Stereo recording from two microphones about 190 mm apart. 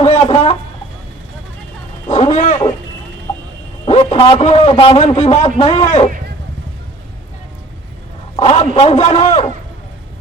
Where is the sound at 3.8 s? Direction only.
30° left (ahead or behind).